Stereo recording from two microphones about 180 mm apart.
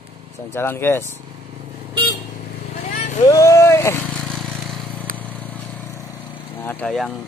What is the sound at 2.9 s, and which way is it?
Vehicle, 40° left (ahead or behind).